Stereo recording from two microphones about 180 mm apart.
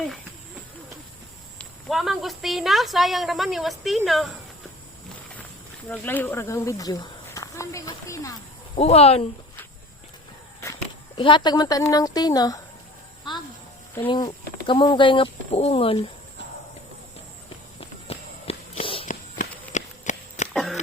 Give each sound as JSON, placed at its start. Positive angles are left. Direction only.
{"t": 1.5, "sound": "speech", "side_deg": 0}
{"t": 5.9, "sound": "speech", "side_deg": 10}
{"t": 8.7, "sound": "speech", "side_deg": 35}
{"t": 11.2, "sound": "speech", "side_deg": 25}
{"t": 14.1, "sound": "speech", "side_deg": 25}
{"t": 17.7, "sound": "walk", "side_deg": 30}
{"t": 19.7, "sound": "a sound", "side_deg": 40}
{"t": 20.5, "sound": "a sound", "side_deg": 0}